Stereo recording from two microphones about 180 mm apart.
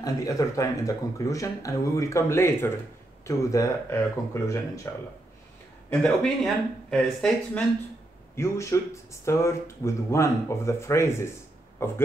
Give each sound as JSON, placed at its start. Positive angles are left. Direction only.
{"t": 0.0, "sound": "speech", "side_deg": 20}
{"t": 5.9, "sound": "speech", "side_deg": 0}
{"t": 8.4, "sound": "speech", "side_deg": 15}